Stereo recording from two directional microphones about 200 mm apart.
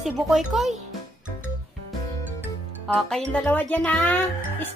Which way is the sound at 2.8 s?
5° left (ahead or behind).